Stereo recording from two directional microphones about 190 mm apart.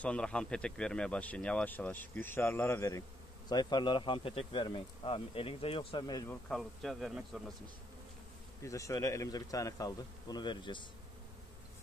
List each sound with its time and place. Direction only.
0.0 s a man's voice: 5° left (ahead or behind); by 6.3 s 20° left (ahead or behind)
6.5 s a man's voice: centre (ahead or behind)
8.6 s a man's voice: 15° left (ahead or behind)